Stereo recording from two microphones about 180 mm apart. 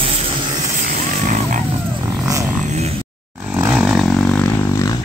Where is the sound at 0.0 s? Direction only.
30° right (ahead or behind).